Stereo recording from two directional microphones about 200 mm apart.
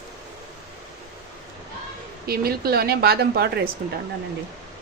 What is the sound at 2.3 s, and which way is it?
Speech, 50° right (ahead or behind).